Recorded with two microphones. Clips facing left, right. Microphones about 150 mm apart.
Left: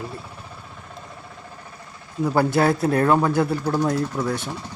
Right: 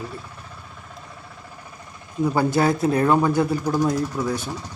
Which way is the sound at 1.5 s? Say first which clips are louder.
Left 1 dB; 15° right (ahead or behind).